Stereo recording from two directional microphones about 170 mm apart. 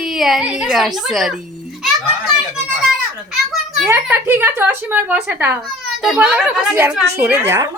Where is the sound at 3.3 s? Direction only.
Centre (ahead or behind).